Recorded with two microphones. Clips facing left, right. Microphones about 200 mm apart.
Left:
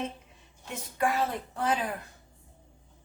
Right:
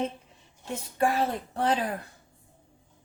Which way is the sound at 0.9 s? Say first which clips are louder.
Right 2 dB; 30° right (ahead or behind).